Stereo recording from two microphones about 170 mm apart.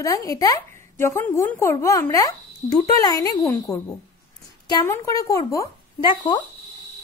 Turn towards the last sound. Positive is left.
turn(degrees=25)  # may be behind; listen again after turning